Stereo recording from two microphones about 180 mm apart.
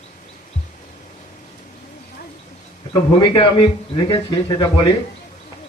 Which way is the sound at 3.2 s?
25° left (ahead or behind).